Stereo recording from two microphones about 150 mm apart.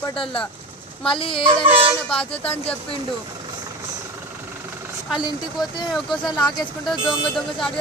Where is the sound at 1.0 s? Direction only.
35° left (ahead or behind).